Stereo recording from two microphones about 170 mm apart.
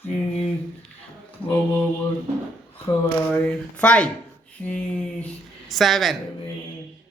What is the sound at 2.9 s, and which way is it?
Speech, 10° left (ahead or behind).